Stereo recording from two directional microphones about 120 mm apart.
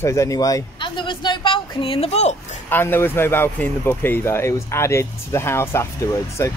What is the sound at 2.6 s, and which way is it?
Speech, 15° left (ahead or behind).